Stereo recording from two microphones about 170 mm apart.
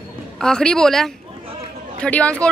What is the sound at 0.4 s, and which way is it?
Speech, 5° left (ahead or behind).